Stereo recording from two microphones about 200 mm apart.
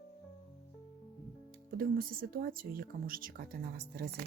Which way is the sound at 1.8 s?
45° right (ahead or behind).